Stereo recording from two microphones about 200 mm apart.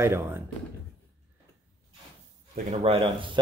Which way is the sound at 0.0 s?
15° right (ahead or behind).